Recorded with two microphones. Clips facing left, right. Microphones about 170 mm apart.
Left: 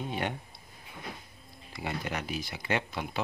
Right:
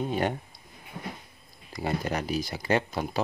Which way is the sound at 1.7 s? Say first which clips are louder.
Right 6 dB; 40° right (ahead or behind).